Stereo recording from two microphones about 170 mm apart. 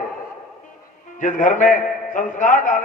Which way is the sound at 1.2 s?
50° left (ahead or behind).